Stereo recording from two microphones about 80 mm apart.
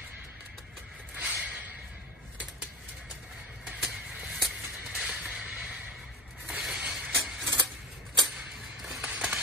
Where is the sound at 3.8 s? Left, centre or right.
Centre.